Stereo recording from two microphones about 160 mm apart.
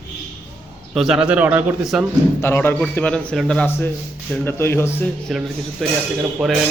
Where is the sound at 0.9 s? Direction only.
5° right (ahead or behind).